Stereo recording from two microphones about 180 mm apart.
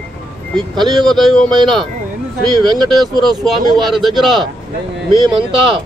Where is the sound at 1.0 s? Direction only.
Centre (ahead or behind).